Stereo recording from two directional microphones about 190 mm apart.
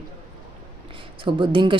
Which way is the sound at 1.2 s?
25° right (ahead or behind).